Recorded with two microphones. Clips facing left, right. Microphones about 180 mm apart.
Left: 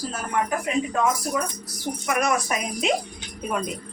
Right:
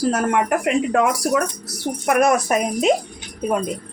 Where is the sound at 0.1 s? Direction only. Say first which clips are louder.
Right 7 dB; 80° right; by 2.9 s 45° right (ahead or behind).